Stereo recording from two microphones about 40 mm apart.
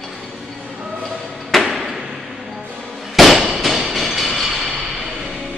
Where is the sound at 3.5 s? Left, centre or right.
Centre.